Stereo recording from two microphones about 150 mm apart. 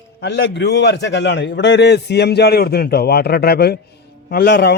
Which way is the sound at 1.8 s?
90° left.